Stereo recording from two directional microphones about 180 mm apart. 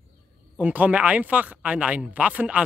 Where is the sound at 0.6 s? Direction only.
10° right (ahead or behind).